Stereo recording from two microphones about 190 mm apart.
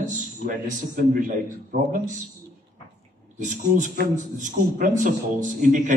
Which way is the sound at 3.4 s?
40° right (ahead or behind).